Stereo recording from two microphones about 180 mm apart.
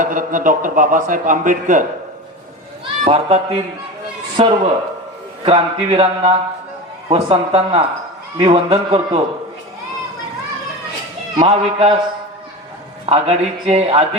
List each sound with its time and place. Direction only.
0.0 s a man's voice: 50° right (ahead or behind)
3.0 s a man's voice: 35° right (ahead or behind)
11.3 s a man's voice: 30° right (ahead or behind)
13.1 s a man's voice: 35° right (ahead or behind)